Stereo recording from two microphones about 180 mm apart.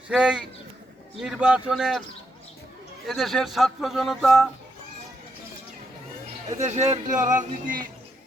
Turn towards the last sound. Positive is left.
turn(degrees=-45)  # may be behind; listen again after turning